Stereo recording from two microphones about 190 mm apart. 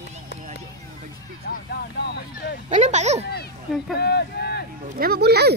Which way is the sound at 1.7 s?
60° left (ahead or behind).